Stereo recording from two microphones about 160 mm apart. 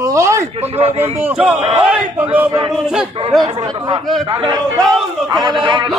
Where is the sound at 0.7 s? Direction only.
40° right (ahead or behind).